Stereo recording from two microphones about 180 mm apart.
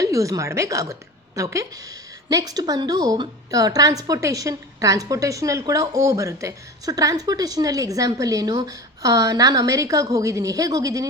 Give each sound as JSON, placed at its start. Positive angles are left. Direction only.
{"t": 0.0, "sound": "a woman's voice", "side_deg": -20}